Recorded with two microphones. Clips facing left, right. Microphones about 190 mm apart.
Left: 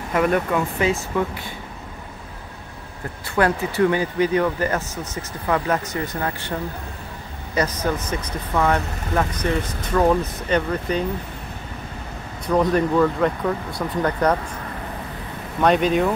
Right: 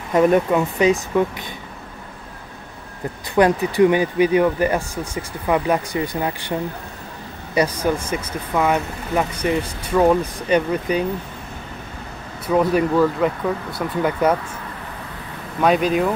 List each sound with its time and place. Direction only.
0.1 s speech: 25° right (ahead or behind)
3.3 s speech: 15° right (ahead or behind)
7.5 s speech: 10° right (ahead or behind)
12.4 s speech: 5° right (ahead or behind)
15.6 s speech: centre (ahead or behind)